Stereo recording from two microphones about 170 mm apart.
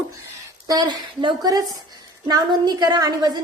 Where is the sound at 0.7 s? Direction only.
25° right (ahead or behind).